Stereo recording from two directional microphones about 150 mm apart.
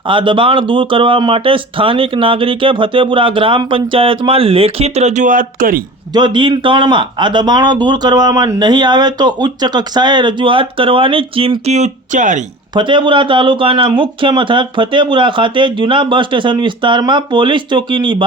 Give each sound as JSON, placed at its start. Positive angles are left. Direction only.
{"t": 0.1, "sound": "speech", "side_deg": -35}
{"t": 6.1, "sound": "speech", "side_deg": -30}
{"t": 12.7, "sound": "speech", "side_deg": -30}